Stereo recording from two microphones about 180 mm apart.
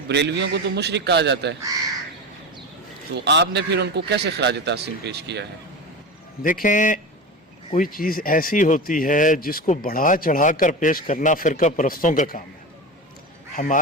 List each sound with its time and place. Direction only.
0.1 s a man's voice: 70° right (ahead or behind)
3.2 s a man's voice: 75° right (ahead or behind)
6.4 s speech: 50° left (ahead or behind)
13.6 s speech: 35° left (ahead or behind)